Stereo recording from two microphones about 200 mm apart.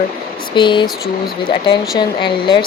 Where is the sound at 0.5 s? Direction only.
25° left (ahead or behind).